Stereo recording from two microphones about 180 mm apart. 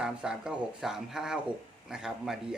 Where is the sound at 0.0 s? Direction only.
5° right (ahead or behind).